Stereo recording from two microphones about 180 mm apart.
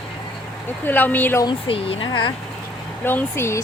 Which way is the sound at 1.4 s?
30° left (ahead or behind).